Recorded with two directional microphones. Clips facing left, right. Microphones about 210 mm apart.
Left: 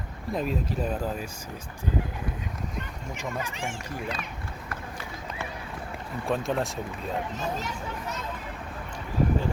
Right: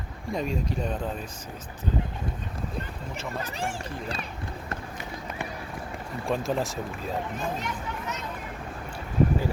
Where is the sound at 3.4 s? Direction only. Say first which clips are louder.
Right 2 dB; 35° right (ahead or behind).